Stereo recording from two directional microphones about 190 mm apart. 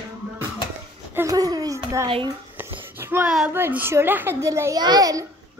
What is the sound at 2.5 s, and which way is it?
A woman's voice, 10° right (ahead or behind).